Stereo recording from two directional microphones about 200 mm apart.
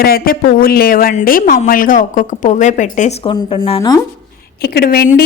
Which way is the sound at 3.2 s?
25° left (ahead or behind).